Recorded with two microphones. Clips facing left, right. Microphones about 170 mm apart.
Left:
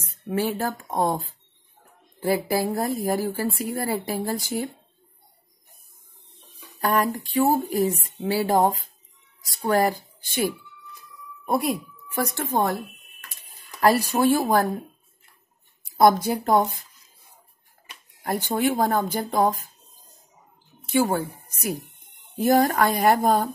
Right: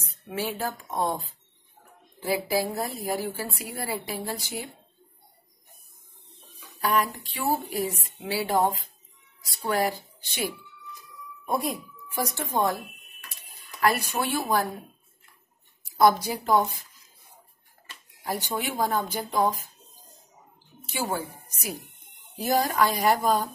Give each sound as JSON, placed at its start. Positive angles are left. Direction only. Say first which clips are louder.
{"t": 0.0, "sound": "speech", "louder": "left 6 dB", "side_deg": 50}
{"t": 6.8, "sound": "speech", "louder": "left 3 dB", "side_deg": 50}
{"t": 11.4, "sound": "speech", "louder": "left 4 dB", "side_deg": 60}
{"t": 13.7, "sound": "speech", "louder": "left 5 dB", "side_deg": 35}
{"t": 16.0, "sound": "speech", "louder": "left 3 dB", "side_deg": 50}
{"t": 18.2, "sound": "speech", "louder": "left 7 dB", "side_deg": 55}
{"t": 22.4, "sound": "speech", "louder": "left 5 dB", "side_deg": 55}